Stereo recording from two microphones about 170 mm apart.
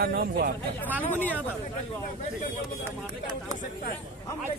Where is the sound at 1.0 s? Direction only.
10° left (ahead or behind).